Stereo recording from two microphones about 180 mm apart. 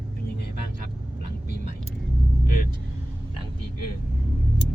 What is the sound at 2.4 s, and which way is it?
Speech, 55° left (ahead or behind).